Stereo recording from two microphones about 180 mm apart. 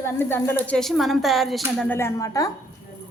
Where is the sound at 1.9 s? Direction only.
15° left (ahead or behind).